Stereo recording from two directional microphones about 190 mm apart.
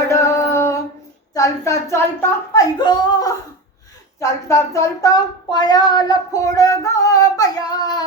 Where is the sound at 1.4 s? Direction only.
15° left (ahead or behind).